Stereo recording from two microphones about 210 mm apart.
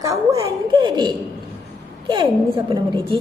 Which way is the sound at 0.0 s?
15° right (ahead or behind).